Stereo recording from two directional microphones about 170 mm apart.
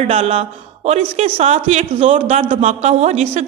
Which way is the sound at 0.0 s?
40° right (ahead or behind).